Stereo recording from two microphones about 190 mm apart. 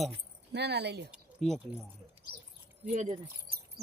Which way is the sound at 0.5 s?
60° right (ahead or behind).